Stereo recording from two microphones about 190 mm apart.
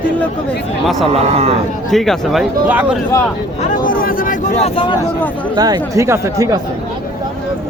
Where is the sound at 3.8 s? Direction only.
50° left (ahead or behind).